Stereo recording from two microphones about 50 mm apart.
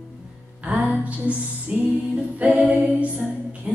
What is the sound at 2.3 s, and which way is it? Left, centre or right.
A capella, right.